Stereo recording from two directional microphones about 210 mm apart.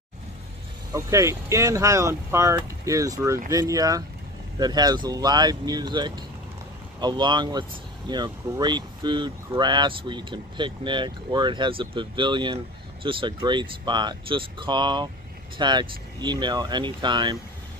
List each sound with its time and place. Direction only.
0.9 s speech: 15° right (ahead or behind)